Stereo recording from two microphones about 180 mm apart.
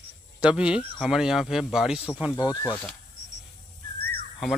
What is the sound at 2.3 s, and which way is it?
Speech, 20° left (ahead or behind).